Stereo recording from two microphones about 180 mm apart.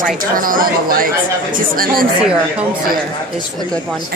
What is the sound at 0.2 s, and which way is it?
Speech, 50° right (ahead or behind).